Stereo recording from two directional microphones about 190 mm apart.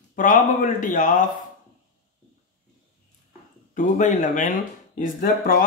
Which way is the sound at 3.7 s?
40° left (ahead or behind).